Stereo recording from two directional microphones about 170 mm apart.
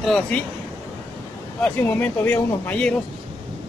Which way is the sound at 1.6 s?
10° left (ahead or behind).